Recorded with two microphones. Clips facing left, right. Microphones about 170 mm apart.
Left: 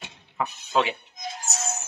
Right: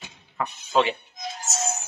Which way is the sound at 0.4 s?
15° left (ahead or behind).